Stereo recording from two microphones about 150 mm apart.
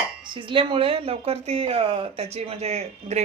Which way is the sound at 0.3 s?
35° right (ahead or behind).